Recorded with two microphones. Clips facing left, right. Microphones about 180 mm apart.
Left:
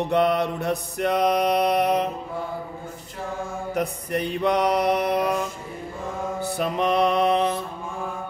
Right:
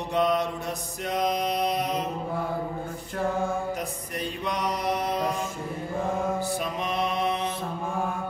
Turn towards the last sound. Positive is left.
turn(degrees=60)  # may be behind; listen again after turning